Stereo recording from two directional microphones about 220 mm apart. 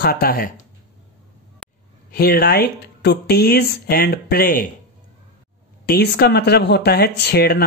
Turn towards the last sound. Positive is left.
turn(degrees=45)  # may be behind; listen again after turning